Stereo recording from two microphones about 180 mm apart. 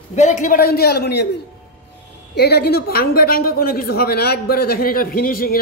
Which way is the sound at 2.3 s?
65° left (ahead or behind).